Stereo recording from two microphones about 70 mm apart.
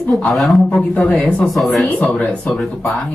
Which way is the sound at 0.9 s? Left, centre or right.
Left.